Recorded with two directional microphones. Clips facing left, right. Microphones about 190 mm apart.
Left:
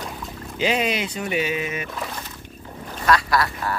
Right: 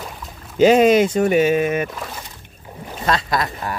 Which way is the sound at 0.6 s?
45° right (ahead or behind).